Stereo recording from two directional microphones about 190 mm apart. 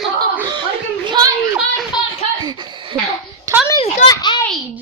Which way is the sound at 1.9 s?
25° left (ahead or behind).